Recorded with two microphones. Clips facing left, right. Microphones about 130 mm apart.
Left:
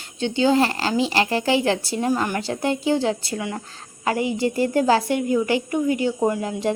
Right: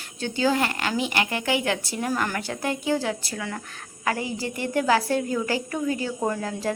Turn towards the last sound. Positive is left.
turn(degrees=20)  # may be behind; listen again after turning